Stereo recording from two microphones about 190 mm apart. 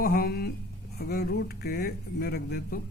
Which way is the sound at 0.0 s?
50° left (ahead or behind).